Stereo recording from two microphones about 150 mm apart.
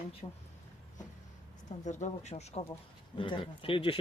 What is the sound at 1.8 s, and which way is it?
Speech, 50° left (ahead or behind).